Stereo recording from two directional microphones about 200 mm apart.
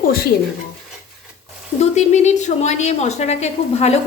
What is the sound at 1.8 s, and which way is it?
A woman's voice, 35° left (ahead or behind).